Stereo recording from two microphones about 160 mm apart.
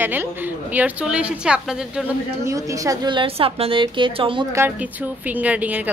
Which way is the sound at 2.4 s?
20° right (ahead or behind).